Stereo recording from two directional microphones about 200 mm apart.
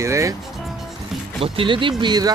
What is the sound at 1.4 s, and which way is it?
Speech, 25° right (ahead or behind).